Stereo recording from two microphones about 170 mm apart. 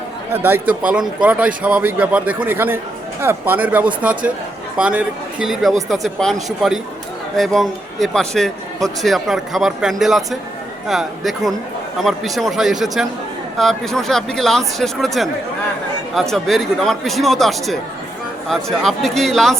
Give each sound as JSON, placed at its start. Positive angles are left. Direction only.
{"t": 0.3, "sound": "a man's voice", "side_deg": -10}